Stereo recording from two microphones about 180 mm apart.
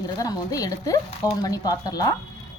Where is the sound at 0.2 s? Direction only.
20° left (ahead or behind).